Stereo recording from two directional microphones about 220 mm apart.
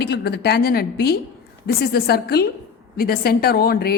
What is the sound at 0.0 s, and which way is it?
A woman's voice, 45° left (ahead or behind).